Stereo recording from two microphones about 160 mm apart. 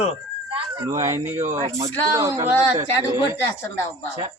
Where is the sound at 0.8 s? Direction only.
20° right (ahead or behind).